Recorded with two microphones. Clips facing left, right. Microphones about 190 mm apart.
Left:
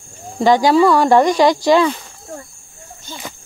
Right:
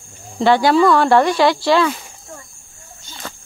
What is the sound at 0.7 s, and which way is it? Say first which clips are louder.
Speech: left 1 dB; 10° left (ahead or behind).